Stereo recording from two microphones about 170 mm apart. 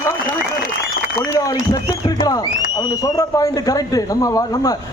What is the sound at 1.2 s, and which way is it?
A man's voice, 20° left (ahead or behind).